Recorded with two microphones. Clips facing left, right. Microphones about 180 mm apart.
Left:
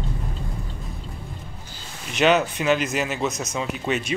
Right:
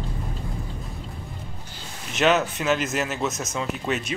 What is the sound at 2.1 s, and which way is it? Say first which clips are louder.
Speech: left 2 dB; centre (ahead or behind).